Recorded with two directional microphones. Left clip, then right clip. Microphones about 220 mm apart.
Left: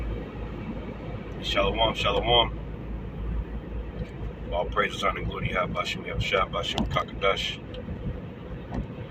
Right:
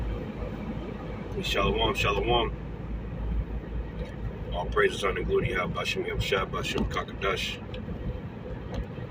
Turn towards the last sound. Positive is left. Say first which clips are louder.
# left 4 dB
turn(degrees=15)  # may be behind; listen again after turning